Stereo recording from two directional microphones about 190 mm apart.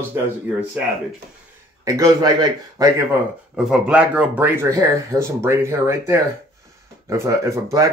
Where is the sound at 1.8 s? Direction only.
15° right (ahead or behind).